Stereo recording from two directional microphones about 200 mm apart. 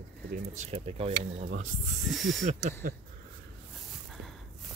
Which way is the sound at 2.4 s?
35° right (ahead or behind).